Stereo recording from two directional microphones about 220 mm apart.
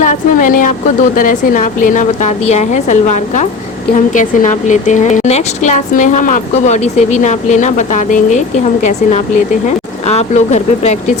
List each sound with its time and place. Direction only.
0.0 s a woman's voice: 35° left (ahead or behind)
9.6 s speech: 30° left (ahead or behind)